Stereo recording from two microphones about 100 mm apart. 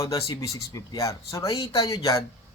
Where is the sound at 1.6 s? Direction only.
75° left (ahead or behind).